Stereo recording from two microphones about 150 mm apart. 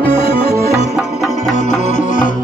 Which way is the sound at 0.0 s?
35° left (ahead or behind).